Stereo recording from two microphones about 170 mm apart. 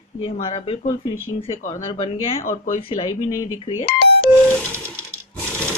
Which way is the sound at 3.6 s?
30° left (ahead or behind).